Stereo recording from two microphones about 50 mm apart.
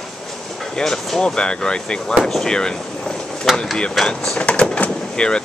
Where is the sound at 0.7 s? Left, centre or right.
Centre.